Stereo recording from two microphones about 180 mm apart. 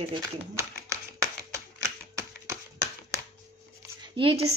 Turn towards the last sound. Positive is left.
turn(degrees=-30)  # may be behind; listen again after turning